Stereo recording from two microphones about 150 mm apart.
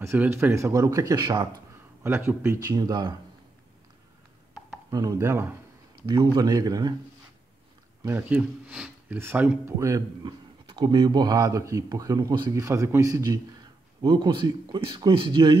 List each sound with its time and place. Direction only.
0.0 s speech: 15° right (ahead or behind)
2.0 s speech: 15° right (ahead or behind)
4.9 s speech: 20° right (ahead or behind)
6.0 s speech: 25° right (ahead or behind)
8.0 s speech: 15° right (ahead or behind); by 15.5 s 30° right (ahead or behind)